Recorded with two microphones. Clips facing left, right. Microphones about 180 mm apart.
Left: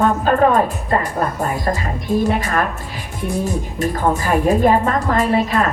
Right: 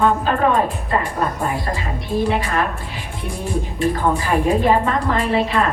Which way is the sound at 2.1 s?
45° left (ahead or behind).